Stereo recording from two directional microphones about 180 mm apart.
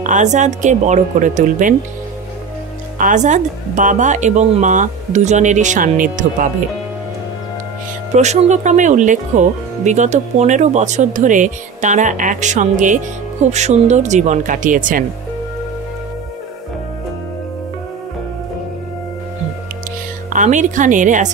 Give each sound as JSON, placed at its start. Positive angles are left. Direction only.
{"t": 0.0, "sound": "speech", "side_deg": -40}
{"t": 3.0, "sound": "speech", "side_deg": -45}
{"t": 8.2, "sound": "speech", "side_deg": -40}
{"t": 20.3, "sound": "speech", "side_deg": -45}